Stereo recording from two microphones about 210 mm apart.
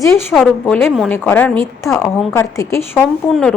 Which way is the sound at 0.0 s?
10° left (ahead or behind).